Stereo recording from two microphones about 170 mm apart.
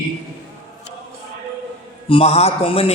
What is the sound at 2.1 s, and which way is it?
Music, 35° left (ahead or behind).